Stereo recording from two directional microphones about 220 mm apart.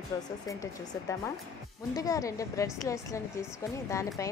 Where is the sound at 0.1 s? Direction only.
15° left (ahead or behind).